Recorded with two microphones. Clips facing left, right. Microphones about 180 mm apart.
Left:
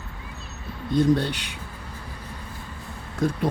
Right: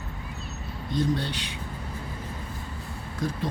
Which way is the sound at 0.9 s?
60° left (ahead or behind).